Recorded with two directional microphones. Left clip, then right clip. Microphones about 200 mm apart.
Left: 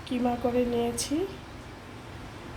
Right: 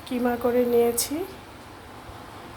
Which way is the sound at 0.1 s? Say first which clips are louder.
Right 4 dB; 15° right (ahead or behind).